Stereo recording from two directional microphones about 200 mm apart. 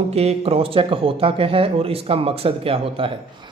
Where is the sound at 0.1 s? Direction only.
30° right (ahead or behind).